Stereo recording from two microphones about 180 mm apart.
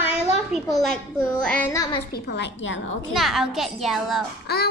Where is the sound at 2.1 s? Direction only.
65° left (ahead or behind); by 2.8 s 80° left.